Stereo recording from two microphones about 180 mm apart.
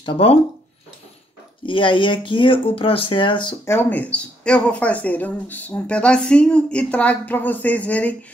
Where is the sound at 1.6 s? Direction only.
25° left (ahead or behind).